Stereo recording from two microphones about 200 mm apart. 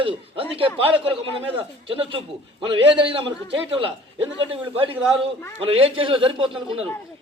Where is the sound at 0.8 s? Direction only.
25° right (ahead or behind).